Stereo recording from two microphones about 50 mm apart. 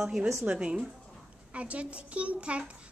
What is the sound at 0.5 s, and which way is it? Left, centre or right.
A child's voice, right.